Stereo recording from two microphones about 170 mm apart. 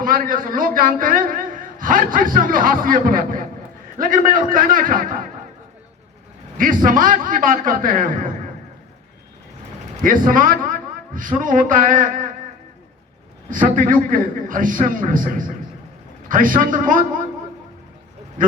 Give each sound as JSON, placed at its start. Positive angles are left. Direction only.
{"t": 0.0, "sound": "a man's voice", "side_deg": -55}
{"t": 6.6, "sound": "a man's voice", "side_deg": -55}
{"t": 10.0, "sound": "a man's voice", "side_deg": -55}
{"t": 13.5, "sound": "a man's voice", "side_deg": -50}
{"t": 18.4, "sound": "speech", "side_deg": -55}